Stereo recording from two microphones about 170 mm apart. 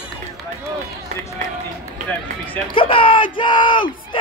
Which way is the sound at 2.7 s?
30° left (ahead or behind).